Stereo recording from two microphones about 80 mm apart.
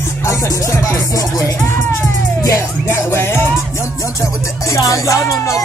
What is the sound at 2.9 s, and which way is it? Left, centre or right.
Music, left.